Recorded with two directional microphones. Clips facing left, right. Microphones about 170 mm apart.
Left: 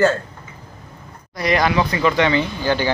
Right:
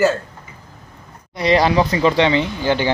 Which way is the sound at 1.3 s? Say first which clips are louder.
Right 3 dB; 30° right (ahead or behind).